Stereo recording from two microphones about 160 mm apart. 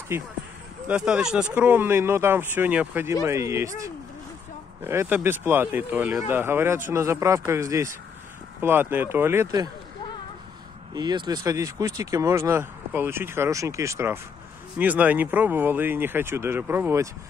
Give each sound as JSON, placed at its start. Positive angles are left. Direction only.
{"t": 0.8, "sound": "speech", "side_deg": -5}
{"t": 11.0, "sound": "speech", "side_deg": -25}